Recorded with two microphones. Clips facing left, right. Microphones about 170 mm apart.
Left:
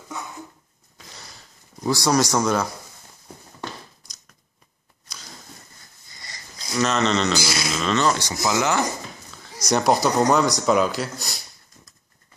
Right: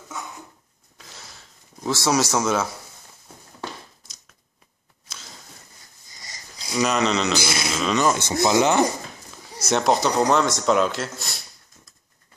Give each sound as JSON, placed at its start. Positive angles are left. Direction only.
{"t": 0.9, "sound": "a sound", "side_deg": -5}
{"t": 6.6, "sound": "speech", "side_deg": -10}
{"t": 7.3, "sound": "speech", "side_deg": -25}
{"t": 7.7, "sound": "speech", "side_deg": -10}
{"t": 9.4, "sound": "a sound", "side_deg": -5}
{"t": 9.8, "sound": "speech", "side_deg": 5}